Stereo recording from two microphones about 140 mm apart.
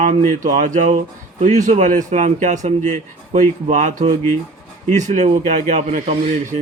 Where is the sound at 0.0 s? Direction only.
65° right (ahead or behind).